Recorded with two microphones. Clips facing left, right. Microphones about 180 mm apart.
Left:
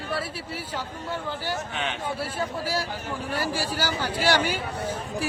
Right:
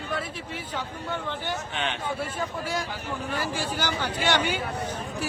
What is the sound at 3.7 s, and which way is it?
A man's voice, 10° left (ahead or behind).